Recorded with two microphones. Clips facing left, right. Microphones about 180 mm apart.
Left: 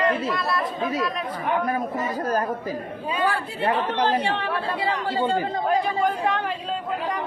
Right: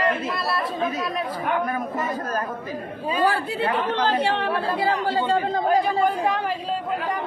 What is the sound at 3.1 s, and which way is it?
Speech, 35° right (ahead or behind).